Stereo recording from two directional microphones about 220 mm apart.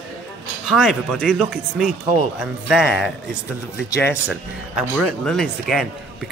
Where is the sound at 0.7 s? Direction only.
Centre (ahead or behind).